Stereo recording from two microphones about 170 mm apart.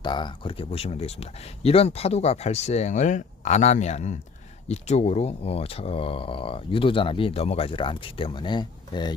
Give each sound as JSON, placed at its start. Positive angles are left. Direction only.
{"t": 0.0, "sound": "speech", "side_deg": 25}